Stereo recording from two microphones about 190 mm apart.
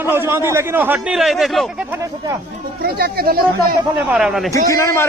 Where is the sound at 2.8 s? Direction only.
55° right (ahead or behind).